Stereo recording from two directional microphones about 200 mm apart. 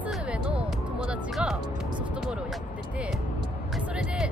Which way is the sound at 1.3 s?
Centre (ahead or behind).